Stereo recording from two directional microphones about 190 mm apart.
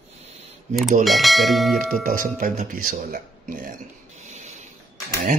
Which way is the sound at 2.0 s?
45° right (ahead or behind).